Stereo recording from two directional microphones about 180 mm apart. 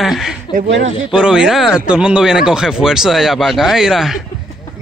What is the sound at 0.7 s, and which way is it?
Speech, 90° right.